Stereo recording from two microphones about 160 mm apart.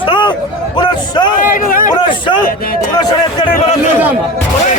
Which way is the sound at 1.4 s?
60° left (ahead or behind).